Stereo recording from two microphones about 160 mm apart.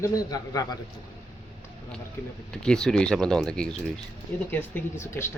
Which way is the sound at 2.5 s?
5° left (ahead or behind).